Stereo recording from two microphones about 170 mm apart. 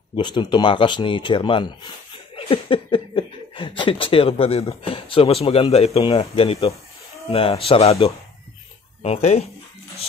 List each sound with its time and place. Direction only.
0.1 s speech: 25° left (ahead or behind)